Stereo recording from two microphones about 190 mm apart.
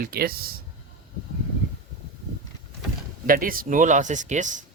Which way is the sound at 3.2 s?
50° right (ahead or behind).